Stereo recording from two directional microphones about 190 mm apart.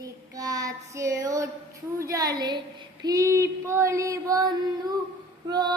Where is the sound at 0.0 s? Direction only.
20° right (ahead or behind).